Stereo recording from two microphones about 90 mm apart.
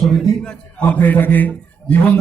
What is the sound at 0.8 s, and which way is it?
Speech, 20° left (ahead or behind).